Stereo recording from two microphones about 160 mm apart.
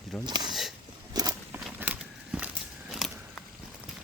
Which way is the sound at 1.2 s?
25° right (ahead or behind).